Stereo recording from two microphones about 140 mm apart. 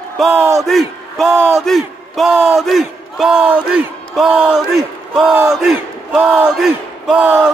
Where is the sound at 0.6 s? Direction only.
Centre (ahead or behind).